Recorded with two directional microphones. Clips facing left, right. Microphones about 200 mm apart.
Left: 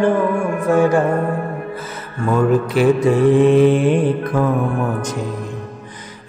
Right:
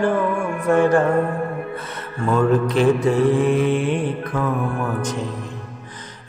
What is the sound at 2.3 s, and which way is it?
Mantra, 5° left (ahead or behind).